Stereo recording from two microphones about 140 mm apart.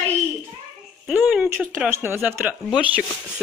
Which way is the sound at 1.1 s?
10° right (ahead or behind).